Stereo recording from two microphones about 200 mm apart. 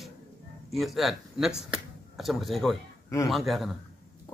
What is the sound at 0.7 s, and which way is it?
Speech, centre (ahead or behind).